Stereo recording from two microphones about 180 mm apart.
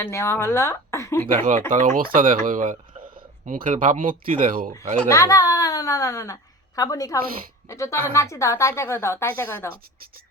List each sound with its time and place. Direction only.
0.0 s a woman's voice: 15° left (ahead or behind)
1.7 s speech: 45° right (ahead or behind)
5.0 s a woman's voice: 20° left (ahead or behind)